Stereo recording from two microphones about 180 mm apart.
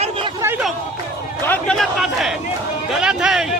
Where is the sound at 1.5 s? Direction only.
5° left (ahead or behind).